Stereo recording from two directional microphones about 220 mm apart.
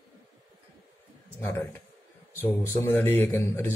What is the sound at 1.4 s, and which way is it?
Speech, 10° left (ahead or behind).